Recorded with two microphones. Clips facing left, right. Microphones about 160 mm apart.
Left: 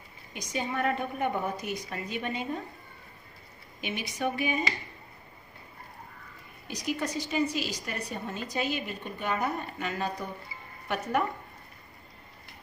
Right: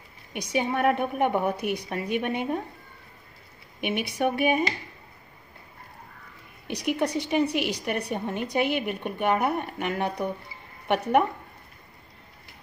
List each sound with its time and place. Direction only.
0.3 s a woman's voice: 65° right (ahead or behind)
3.8 s a woman's voice: 60° right (ahead or behind)
6.7 s a woman's voice: 65° right (ahead or behind)